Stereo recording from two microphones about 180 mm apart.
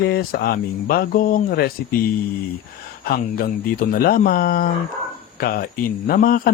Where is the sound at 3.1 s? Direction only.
55° left (ahead or behind).